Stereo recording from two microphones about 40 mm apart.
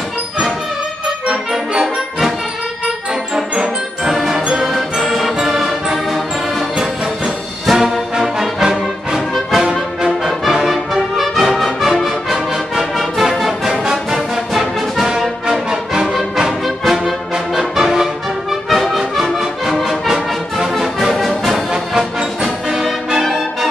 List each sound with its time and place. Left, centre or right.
3.5 s music: right
4.1 s jingle bell: centre
4.6 s music: centre
7.6 s music: centre
15.7 s music: centre
16.6 s music: centre